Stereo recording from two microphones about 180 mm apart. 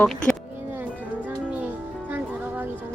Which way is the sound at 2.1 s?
10° right (ahead or behind).